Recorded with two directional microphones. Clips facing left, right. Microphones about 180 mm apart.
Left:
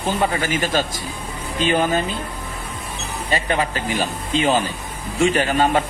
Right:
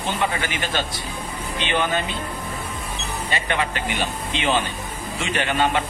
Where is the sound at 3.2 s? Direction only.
35° left (ahead or behind).